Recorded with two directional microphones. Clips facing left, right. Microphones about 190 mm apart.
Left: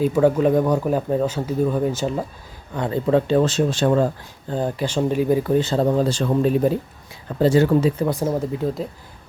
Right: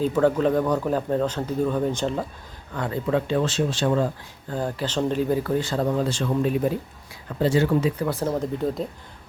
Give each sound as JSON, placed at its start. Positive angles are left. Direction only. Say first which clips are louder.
{"t": 0.0, "sound": "speech", "louder": "left 3 dB", "side_deg": 10}
{"t": 2.7, "sound": "speech", "louder": "left 4 dB", "side_deg": 20}
{"t": 3.1, "sound": "speech", "louder": "left 6 dB", "side_deg": 35}
{"t": 4.4, "sound": "speech", "louder": "left 4 dB", "side_deg": 20}
{"t": 7.9, "sound": "speech", "louder": "left 3 dB", "side_deg": 15}